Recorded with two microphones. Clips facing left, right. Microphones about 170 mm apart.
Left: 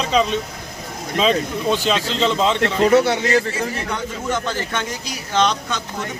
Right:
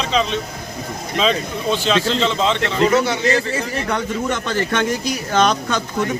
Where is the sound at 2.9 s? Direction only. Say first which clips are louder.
Left 3 dB; 60° left (ahead or behind).